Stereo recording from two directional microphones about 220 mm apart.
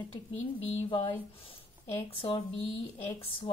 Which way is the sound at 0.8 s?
20° left (ahead or behind).